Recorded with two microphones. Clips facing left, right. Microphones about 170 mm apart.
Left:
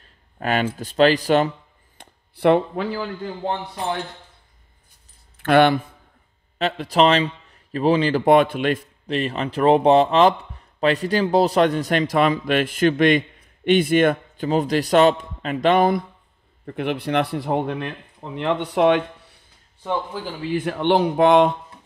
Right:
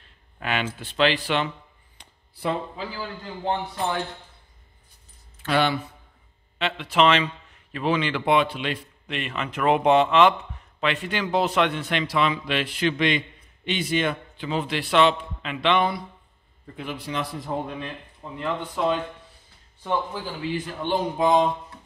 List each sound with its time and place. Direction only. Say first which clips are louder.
0.0 s a sound: left 6 dB; 40° left (ahead or behind)
0.7 s a man's voice: left 6 dB; 40° left (ahead or behind)
2.0 s a sound: left 11 dB; 65° left (ahead or behind)
5.4 s speech: left 7 dB; 55° left (ahead or behind)
6.6 s a man's voice: left 3 dB; 40° left (ahead or behind)
16.6 s speech: left 9 dB; 65° left (ahead or behind)
20.5 s speech: left 9 dB; 65° left (ahead or behind)